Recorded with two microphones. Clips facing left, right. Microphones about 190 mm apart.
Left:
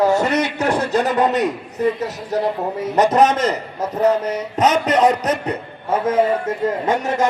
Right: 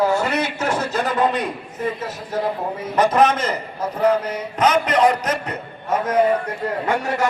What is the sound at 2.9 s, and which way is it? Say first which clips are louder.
Speech: left 2 dB; 40° left (ahead or behind).